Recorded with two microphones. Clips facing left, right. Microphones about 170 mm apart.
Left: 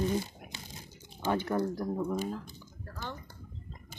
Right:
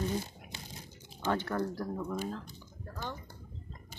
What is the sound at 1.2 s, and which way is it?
Speech, 15° left (ahead or behind).